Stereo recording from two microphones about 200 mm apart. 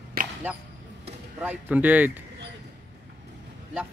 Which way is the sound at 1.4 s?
10° right (ahead or behind).